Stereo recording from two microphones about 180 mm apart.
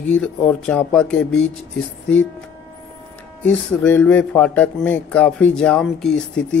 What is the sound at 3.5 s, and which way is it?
Speech, 10° left (ahead or behind).